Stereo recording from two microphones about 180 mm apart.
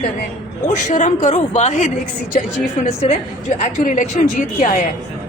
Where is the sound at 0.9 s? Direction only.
45° left (ahead or behind).